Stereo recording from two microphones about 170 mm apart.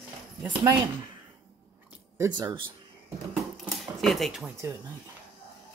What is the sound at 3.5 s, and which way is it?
Cash register, centre (ahead or behind).